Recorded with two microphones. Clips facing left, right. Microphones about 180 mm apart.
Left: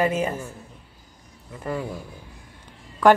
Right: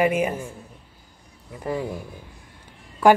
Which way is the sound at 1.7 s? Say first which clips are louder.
Right 2 dB; 15° right (ahead or behind).